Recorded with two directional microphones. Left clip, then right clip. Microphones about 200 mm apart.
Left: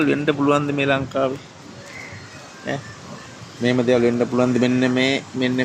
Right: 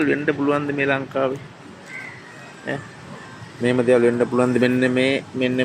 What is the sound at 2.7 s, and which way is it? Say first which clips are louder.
Speech: left 1 dB; 25° left (ahead or behind).